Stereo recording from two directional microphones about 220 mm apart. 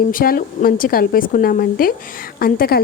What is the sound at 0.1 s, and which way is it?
A woman's voice, 40° left (ahead or behind).